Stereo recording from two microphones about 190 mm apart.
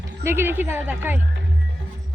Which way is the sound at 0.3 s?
10° right (ahead or behind).